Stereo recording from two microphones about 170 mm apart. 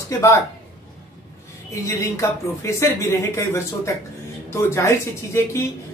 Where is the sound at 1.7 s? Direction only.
20° left (ahead or behind).